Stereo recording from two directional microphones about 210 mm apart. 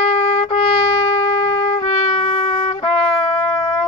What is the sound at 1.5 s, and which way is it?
Trumpet, 25° left (ahead or behind).